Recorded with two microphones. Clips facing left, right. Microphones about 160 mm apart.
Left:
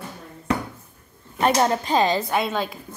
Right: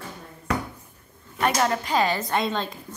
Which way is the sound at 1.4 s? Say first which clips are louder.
Left 3 dB; 30° left (ahead or behind).